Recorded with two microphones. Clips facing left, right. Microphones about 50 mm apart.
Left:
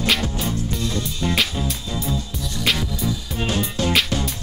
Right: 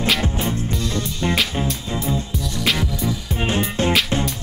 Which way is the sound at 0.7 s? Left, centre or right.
Centre.